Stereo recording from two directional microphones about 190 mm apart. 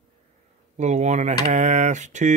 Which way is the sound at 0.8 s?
35° right (ahead or behind).